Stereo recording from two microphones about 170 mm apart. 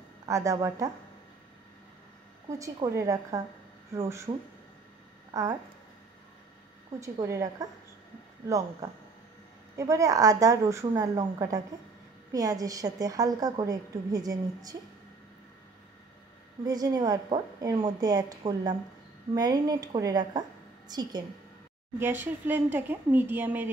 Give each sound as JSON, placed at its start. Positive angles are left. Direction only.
{"t": 0.3, "sound": "a woman's voice", "side_deg": -20}
{"t": 2.6, "sound": "a woman's voice", "side_deg": -20}
{"t": 5.3, "sound": "speech", "side_deg": -20}
{"t": 7.0, "sound": "speech", "side_deg": -15}
{"t": 8.8, "sound": "a woman's voice", "side_deg": -20}
{"t": 16.6, "sound": "a woman's voice", "side_deg": -20}